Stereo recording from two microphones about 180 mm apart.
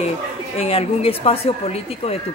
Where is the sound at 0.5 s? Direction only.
30° left (ahead or behind).